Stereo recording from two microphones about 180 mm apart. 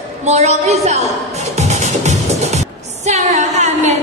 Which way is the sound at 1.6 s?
40° right (ahead or behind).